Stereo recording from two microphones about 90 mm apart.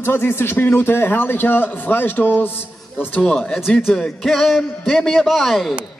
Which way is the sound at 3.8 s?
Centre (ahead or behind).